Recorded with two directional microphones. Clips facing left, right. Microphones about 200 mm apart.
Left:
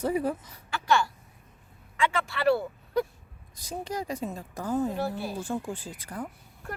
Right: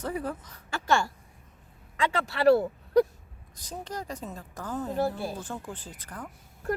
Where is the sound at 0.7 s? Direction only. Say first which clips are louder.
Left 1 dB; 45° right (ahead or behind).